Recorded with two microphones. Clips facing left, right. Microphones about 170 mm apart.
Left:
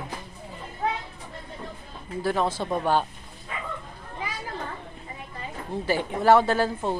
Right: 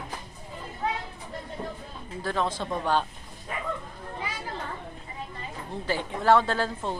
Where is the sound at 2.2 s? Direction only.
10° left (ahead or behind).